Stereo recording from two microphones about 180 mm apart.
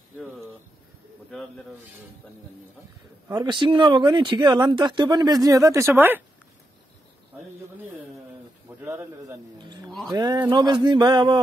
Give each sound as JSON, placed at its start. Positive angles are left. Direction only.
{"t": 3.3, "sound": "speech", "side_deg": -25}
{"t": 8.6, "sound": "speech", "side_deg": -10}